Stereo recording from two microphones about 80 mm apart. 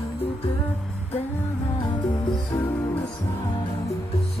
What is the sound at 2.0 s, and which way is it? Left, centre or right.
Music, left.